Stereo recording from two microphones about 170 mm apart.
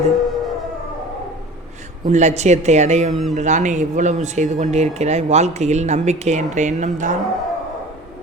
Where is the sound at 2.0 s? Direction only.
45° right (ahead or behind).